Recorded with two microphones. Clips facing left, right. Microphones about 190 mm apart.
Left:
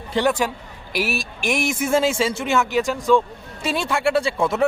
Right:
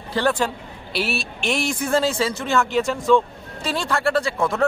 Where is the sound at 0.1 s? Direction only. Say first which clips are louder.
Left 1 dB; 15° left (ahead or behind).